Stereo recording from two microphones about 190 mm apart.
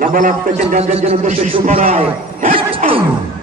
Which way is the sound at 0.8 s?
30° right (ahead or behind).